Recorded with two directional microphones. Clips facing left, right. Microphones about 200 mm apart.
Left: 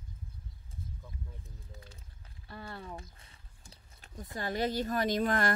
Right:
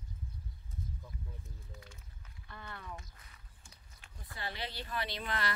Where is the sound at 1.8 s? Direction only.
30° left (ahead or behind).